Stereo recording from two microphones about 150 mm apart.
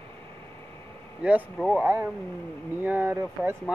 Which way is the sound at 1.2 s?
5° right (ahead or behind).